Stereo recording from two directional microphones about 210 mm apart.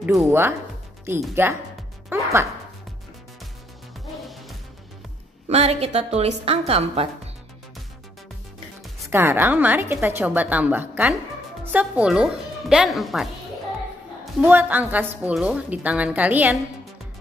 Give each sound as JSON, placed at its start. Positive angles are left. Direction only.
{"t": 0.0, "sound": "speech", "side_deg": 0}
{"t": 0.3, "sound": "a woman's voice", "side_deg": -10}
{"t": 2.1, "sound": "music", "side_deg": -10}
{"t": 5.5, "sound": "a woman's voice", "side_deg": -30}
{"t": 9.1, "sound": "a woman's voice", "side_deg": -10}